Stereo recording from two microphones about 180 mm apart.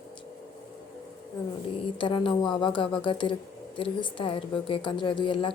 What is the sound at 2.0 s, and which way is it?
A woman's voice, 25° left (ahead or behind).